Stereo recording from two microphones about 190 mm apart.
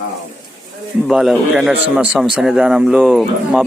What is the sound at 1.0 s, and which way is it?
Speech, centre (ahead or behind).